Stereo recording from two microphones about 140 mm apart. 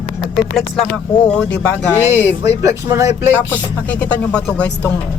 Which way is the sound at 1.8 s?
15° right (ahead or behind).